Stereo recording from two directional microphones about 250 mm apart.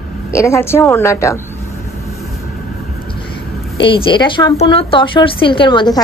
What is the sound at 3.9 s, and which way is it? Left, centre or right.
A woman's voice, centre.